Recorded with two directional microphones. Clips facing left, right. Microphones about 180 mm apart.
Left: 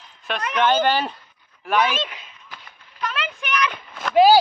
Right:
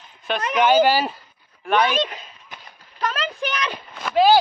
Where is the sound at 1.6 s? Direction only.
5° left (ahead or behind).